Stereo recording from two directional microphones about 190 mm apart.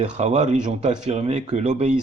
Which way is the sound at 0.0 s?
35° right (ahead or behind).